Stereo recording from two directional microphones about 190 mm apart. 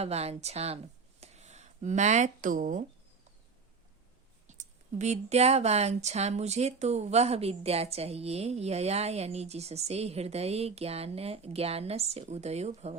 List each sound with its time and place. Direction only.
0.0 s speech: 35° right (ahead or behind)
1.2 s a sound: 35° right (ahead or behind)
4.4 s speech: 40° right (ahead or behind)